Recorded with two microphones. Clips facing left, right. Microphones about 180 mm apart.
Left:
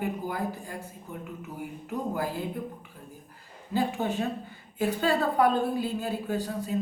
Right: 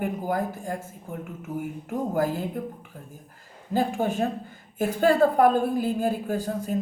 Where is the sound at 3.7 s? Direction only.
45° right (ahead or behind).